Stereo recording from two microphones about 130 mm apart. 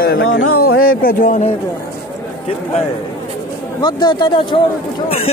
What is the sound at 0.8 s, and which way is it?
Speech, 90° left.